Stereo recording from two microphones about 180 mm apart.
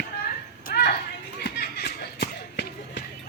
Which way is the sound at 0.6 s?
55° left (ahead or behind).